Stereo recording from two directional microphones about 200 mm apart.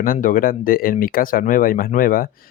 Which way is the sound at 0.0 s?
45° left (ahead or behind).